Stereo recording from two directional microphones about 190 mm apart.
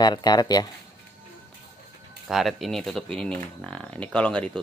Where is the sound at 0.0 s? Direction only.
20° left (ahead or behind).